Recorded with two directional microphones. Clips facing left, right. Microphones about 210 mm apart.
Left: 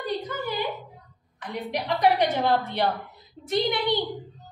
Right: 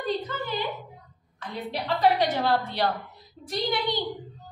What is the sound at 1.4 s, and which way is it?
Speech, 15° left (ahead or behind).